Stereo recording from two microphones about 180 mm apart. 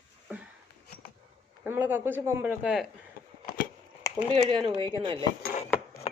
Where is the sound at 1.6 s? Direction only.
10° right (ahead or behind).